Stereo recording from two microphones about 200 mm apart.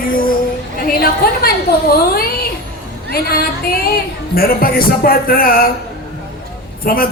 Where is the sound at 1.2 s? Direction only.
50° left (ahead or behind).